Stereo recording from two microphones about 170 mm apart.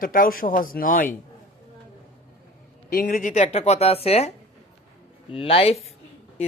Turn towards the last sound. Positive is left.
turn(degrees=35)  # may be behind; listen again after turning